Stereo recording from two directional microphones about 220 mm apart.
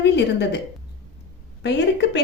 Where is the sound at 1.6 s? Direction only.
50° left (ahead or behind).